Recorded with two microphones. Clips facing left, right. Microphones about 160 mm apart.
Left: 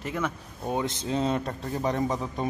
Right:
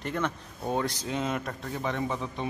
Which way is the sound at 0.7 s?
15° left (ahead or behind).